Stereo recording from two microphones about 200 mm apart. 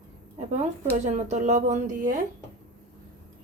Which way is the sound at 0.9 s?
35° right (ahead or behind).